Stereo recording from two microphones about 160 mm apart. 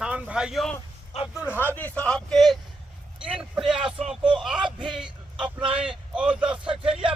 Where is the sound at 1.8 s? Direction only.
10° left (ahead or behind).